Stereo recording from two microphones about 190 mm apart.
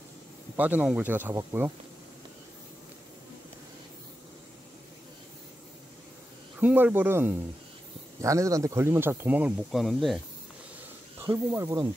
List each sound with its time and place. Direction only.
0.6 s speech: 10° right (ahead or behind)
6.6 s speech: 10° right (ahead or behind)
11.1 s speech: 15° right (ahead or behind)